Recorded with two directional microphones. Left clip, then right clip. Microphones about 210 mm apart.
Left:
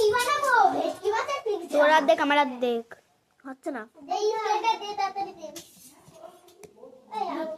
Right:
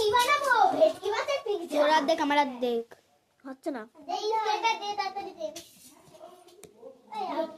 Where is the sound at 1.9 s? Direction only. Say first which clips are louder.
Left 5 dB; centre (ahead or behind).